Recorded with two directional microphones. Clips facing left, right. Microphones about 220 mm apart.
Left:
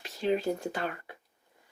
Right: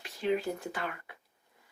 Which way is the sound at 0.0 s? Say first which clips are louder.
Left 2 dB; 30° left (ahead or behind).